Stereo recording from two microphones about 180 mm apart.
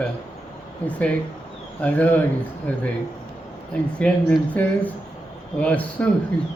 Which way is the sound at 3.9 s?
5° left (ahead or behind).